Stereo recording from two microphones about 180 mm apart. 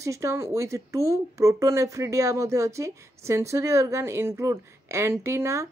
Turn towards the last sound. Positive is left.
turn(degrees=-15)  # may be behind; listen again after turning